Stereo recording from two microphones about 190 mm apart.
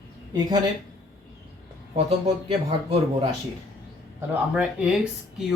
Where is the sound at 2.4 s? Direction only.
30° right (ahead or behind).